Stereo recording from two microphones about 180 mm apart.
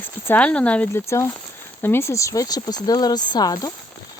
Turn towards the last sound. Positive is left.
turn(degrees=20)  # may be behind; listen again after turning